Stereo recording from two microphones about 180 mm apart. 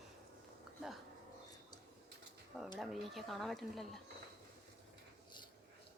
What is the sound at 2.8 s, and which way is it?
Speech, centre (ahead or behind).